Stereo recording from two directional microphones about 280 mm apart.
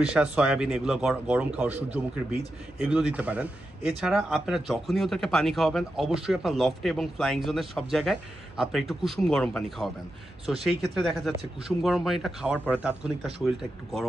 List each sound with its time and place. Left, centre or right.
0.1 s speech: centre